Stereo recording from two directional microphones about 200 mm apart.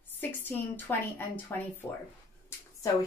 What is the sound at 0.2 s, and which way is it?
A woman's voice, 10° left (ahead or behind).